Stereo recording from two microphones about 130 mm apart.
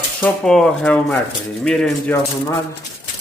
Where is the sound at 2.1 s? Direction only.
20° left (ahead or behind).